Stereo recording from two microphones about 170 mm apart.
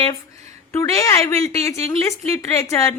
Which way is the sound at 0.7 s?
20° left (ahead or behind).